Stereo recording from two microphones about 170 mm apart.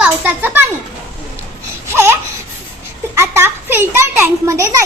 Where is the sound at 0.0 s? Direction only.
10° right (ahead or behind).